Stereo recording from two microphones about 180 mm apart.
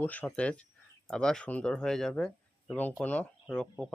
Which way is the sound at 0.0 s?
10° left (ahead or behind).